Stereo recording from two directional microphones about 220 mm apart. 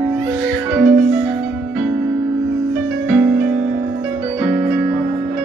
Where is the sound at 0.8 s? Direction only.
40° right (ahead or behind).